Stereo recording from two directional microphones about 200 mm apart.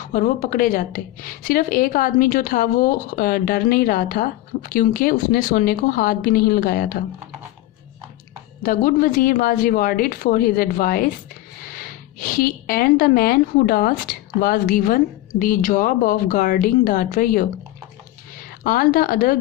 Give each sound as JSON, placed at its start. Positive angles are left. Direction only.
{"t": 0.0, "sound": "speech", "side_deg": 40}
{"t": 8.6, "sound": "speech", "side_deg": 45}
{"t": 18.6, "sound": "speech", "side_deg": 45}